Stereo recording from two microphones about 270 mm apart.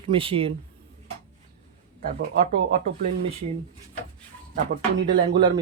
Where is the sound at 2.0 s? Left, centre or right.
Right.